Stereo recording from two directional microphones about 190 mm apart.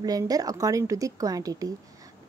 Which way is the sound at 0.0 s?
20° right (ahead or behind).